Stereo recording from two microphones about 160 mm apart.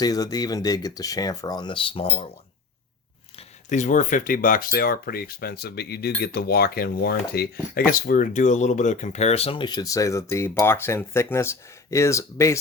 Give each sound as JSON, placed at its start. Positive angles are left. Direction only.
{"t": 0.0, "sound": "speech", "side_deg": 25}
{"t": 3.7, "sound": "speech", "side_deg": 50}